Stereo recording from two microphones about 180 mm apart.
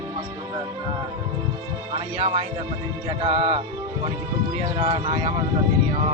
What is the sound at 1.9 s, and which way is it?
Speech, 30° right (ahead or behind).